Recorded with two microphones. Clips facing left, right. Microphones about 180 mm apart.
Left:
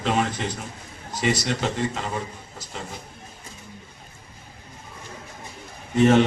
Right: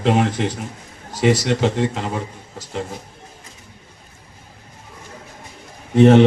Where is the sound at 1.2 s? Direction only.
90° right; by 2.2 s 70° right (ahead or behind).